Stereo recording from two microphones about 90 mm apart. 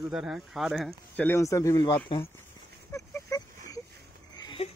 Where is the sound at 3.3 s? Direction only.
40° left (ahead or behind).